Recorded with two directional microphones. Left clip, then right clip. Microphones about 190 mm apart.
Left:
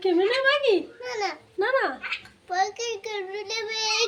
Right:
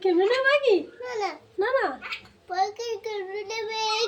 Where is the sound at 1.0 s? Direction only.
10° right (ahead or behind).